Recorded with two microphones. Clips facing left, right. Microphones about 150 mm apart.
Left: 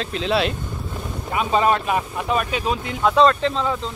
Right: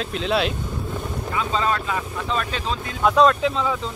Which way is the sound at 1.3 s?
20° left (ahead or behind).